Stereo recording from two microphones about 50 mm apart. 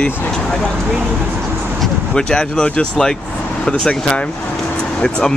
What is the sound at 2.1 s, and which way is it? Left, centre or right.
Speech, centre.